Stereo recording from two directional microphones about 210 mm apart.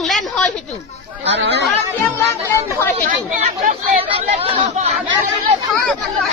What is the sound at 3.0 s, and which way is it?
Chatter, 35° right (ahead or behind).